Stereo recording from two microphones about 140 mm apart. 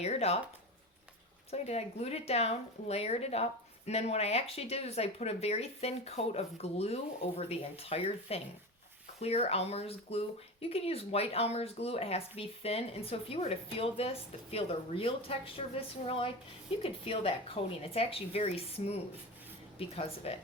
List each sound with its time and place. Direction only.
0.0 s speech: 50° left (ahead or behind)
1.5 s speech: 50° left (ahead or behind)
20.3 s speech: 45° left (ahead or behind)